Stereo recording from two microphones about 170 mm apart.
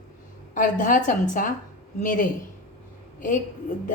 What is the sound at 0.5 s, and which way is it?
A woman's voice, 50° left (ahead or behind).